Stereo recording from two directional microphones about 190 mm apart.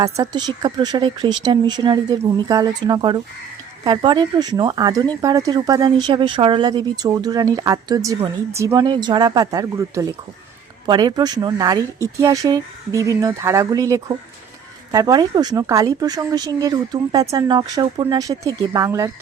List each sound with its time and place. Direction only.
0.0 s speech: 20° right (ahead or behind)